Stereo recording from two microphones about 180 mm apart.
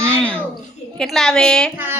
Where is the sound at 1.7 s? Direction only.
10° right (ahead or behind).